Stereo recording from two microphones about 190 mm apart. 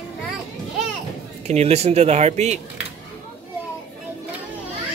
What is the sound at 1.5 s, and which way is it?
A man's voice, 35° right (ahead or behind).